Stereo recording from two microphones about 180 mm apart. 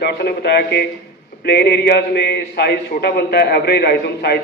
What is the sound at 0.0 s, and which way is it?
A man's voice, 65° left (ahead or behind).